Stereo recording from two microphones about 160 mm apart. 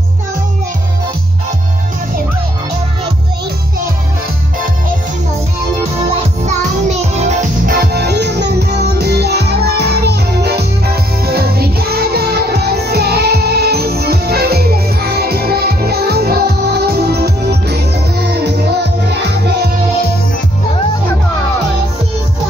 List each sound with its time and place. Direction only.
7.2 s music: 50° right (ahead or behind)
7.7 s music: 80° right
11.2 s music: 75° right (ahead or behind)